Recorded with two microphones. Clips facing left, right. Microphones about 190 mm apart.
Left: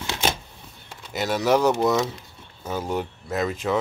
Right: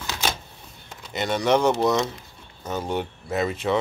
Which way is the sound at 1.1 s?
5° left (ahead or behind).